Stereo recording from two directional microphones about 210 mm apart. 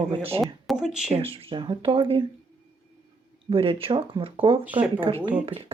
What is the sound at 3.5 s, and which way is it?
Speech, 25° right (ahead or behind).